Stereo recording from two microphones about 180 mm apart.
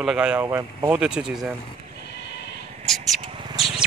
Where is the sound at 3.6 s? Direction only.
Centre (ahead or behind).